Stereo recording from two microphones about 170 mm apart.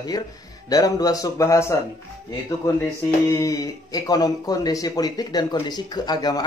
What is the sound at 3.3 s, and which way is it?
Speech, 20° left (ahead or behind).